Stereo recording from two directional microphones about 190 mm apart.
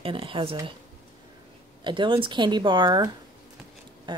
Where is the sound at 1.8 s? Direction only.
25° right (ahead or behind).